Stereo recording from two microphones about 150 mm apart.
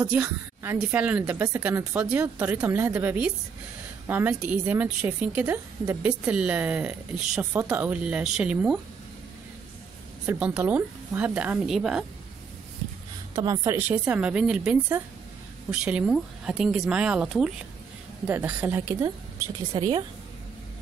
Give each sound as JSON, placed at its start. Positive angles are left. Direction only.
{"t": 0.0, "sound": "a woman's voice", "side_deg": -10}
{"t": 10.2, "sound": "a woman's voice", "side_deg": -10}
{"t": 13.3, "sound": "a woman's voice", "side_deg": -25}
{"t": 19.7, "sound": "speech", "side_deg": -30}